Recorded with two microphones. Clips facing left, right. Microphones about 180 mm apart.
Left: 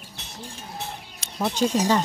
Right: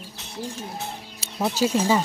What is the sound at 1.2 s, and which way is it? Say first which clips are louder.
Speech: right 1 dB; 5° right (ahead or behind).